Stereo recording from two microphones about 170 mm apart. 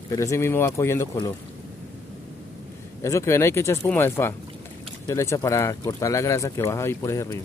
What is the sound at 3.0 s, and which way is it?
Speech, 15° left (ahead or behind).